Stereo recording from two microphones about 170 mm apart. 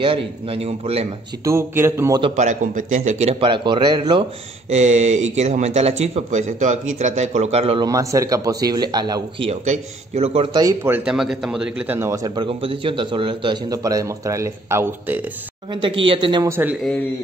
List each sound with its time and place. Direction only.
0.0 s speech: 30° right (ahead or behind)
1.4 s a man's voice: 15° right (ahead or behind)
2.3 s speech: 45° right (ahead or behind); by 4.3 s 25° right (ahead or behind)
4.6 s speech: 45° right (ahead or behind)
7.8 s a man's voice: 20° right (ahead or behind)
9.5 s speech: 40° right (ahead or behind)
10.6 s a man's voice: 15° right (ahead or behind)
12.4 s a man's voice: 30° right (ahead or behind); by 15.2 s 10° right (ahead or behind)
15.7 s a man's voice: 30° right (ahead or behind)
16.4 s a man's voice: 15° right (ahead or behind)